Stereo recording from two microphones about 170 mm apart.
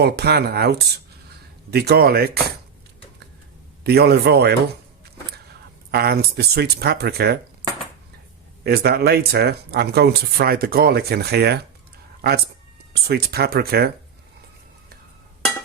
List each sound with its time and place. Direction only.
0.0 s speech: 70° right (ahead or behind)
3.8 s speech: 65° right (ahead or behind)
5.9 s speech: 65° right (ahead or behind)
8.6 s speech: 65° right (ahead or behind)
12.9 s speech: 70° right (ahead or behind)